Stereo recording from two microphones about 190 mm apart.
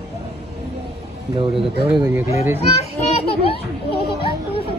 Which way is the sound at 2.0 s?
10° right (ahead or behind).